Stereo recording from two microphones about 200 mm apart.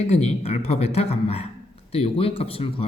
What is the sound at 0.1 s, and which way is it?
Speech, 30° left (ahead or behind).